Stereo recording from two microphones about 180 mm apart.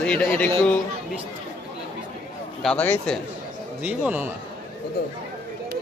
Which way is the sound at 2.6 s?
5° left (ahead or behind).